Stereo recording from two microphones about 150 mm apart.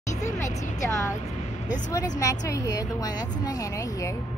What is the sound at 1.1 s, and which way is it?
Vehicle, 55° left (ahead or behind).